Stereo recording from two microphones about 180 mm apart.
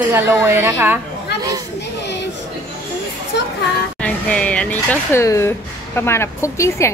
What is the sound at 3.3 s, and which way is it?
Children playing, 70° left (ahead or behind).